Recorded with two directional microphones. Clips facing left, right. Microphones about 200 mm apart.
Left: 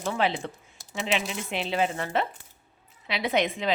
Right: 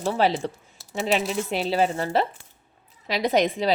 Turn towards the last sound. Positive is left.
turn(degrees=-40)  # may be behind; listen again after turning